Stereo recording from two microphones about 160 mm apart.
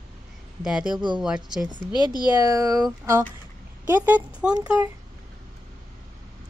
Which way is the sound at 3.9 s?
10° right (ahead or behind).